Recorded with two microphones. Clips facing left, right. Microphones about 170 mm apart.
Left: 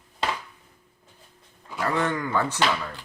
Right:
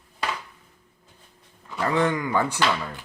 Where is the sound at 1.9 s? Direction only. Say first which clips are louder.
Right 3 dB; 15° right (ahead or behind).